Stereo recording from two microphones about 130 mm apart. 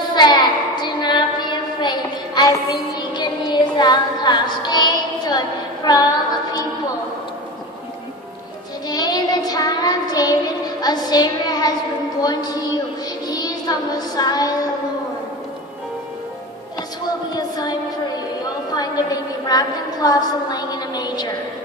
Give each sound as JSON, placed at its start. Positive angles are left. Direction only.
{"t": 0.1, "sound": "child singing", "side_deg": 35}
{"t": 5.9, "sound": "female singing", "side_deg": 30}
{"t": 8.8, "sound": "child singing", "side_deg": 30}
{"t": 12.2, "sound": "a sound", "side_deg": 30}
{"t": 13.3, "sound": "child singing", "side_deg": 30}
{"t": 17.4, "sound": "music", "side_deg": 30}
{"t": 18.8, "sound": "a sound", "side_deg": 30}